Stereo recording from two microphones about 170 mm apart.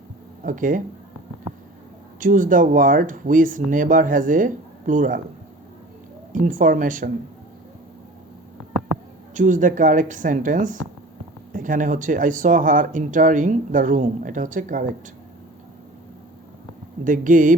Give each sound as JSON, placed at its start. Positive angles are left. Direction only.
{"t": 0.4, "sound": "speech", "side_deg": -50}
{"t": 2.2, "sound": "speech", "side_deg": -50}
{"t": 6.3, "sound": "speech", "side_deg": -50}
{"t": 9.3, "sound": "speech", "side_deg": -50}
{"t": 17.0, "sound": "speech", "side_deg": -50}